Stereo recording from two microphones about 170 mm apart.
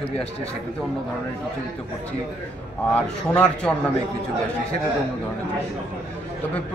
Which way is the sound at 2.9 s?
5° left (ahead or behind).